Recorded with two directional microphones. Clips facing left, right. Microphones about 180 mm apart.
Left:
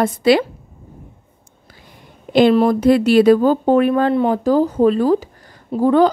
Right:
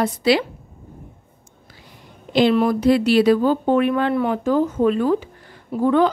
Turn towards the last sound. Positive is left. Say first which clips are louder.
# left 4 dB
turn(degrees=35)  # may be behind; listen again after turning